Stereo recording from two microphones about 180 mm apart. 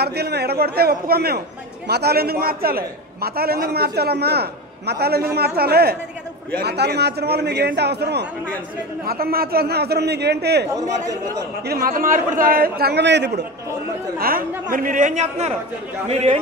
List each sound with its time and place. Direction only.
0.0 s a man's voice: 65° right (ahead or behind)
14.7 s a man's voice: 50° right (ahead or behind)